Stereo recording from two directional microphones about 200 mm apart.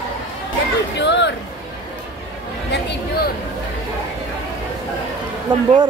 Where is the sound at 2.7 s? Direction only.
55° left (ahead or behind).